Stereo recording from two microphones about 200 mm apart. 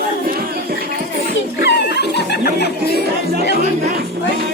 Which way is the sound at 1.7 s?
55° left (ahead or behind).